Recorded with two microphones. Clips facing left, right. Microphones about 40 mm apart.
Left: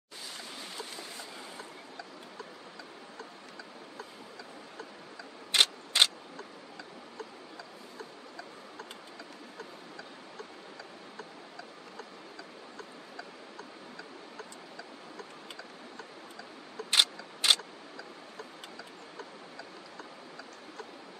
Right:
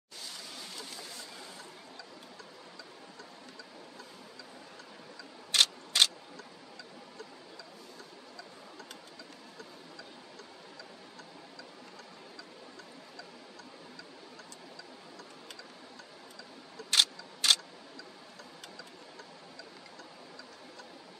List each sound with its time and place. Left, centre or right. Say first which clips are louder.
0.7 s a sound: left 3 dB; left
5.5 s vehicle: left 1 dB; left
16.9 s mechanisms: left 1 dB; left